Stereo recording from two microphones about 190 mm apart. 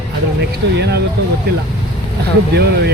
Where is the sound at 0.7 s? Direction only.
65° right (ahead or behind).